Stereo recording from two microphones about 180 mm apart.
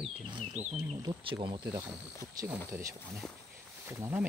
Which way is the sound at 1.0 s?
30° right (ahead or behind).